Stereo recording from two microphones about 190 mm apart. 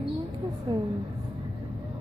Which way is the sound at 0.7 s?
25° right (ahead or behind).